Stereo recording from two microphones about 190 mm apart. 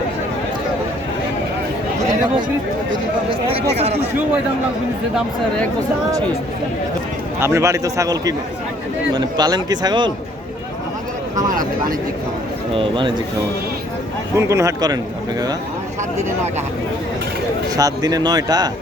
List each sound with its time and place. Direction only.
3.5 s speech: 35° right (ahead or behind)
7.3 s a man's voice: 15° right (ahead or behind)
12.7 s a man's voice: 25° right (ahead or behind)
14.3 s a man's voice: 15° right (ahead or behind)
17.7 s a man's voice: 20° right (ahead or behind)